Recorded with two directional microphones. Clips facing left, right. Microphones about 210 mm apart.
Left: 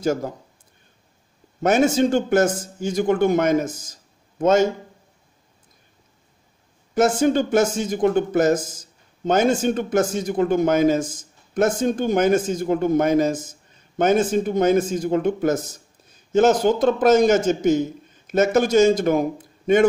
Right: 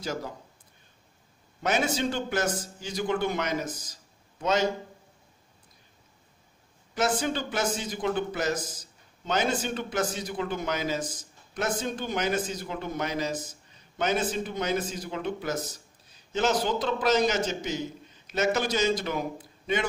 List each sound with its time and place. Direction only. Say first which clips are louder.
0.0 s speech: left 11 dB; 50° left (ahead or behind)
1.6 s speech: left 10 dB; 50° left (ahead or behind)
6.9 s a man's voice: left 10 dB; 50° left (ahead or behind)